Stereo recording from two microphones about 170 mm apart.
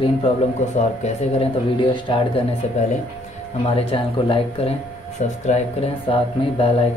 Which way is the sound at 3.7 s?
35° left (ahead or behind).